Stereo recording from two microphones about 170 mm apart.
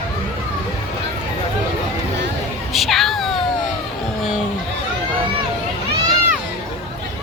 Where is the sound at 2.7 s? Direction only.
Centre (ahead or behind).